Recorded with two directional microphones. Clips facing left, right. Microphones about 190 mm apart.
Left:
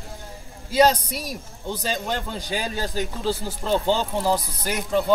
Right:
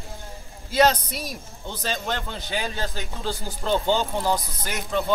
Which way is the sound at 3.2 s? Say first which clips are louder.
Left 4 dB; 5° left (ahead or behind).